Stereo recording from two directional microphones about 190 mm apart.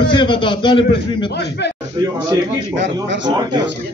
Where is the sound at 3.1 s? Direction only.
70° right (ahead or behind).